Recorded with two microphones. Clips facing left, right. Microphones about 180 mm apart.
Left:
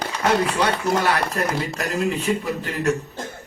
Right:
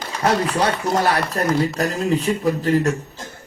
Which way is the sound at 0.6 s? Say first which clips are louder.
Right 1 dB; 35° right (ahead or behind).